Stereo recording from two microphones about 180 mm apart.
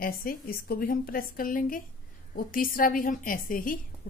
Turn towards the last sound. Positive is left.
turn(degrees=50)  # may be behind; listen again after turning